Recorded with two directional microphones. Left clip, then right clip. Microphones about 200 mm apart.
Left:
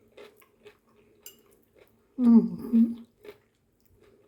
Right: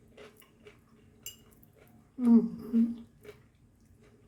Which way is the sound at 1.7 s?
35° left (ahead or behind).